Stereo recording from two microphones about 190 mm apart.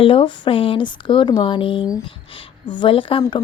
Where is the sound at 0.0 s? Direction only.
30° left (ahead or behind).